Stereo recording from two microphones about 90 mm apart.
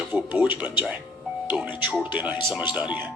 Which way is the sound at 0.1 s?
20° right (ahead or behind).